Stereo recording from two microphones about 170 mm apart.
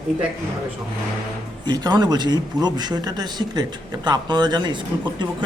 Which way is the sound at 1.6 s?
25° right (ahead or behind).